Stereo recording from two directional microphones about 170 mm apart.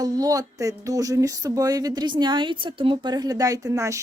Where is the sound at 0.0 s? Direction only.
20° right (ahead or behind).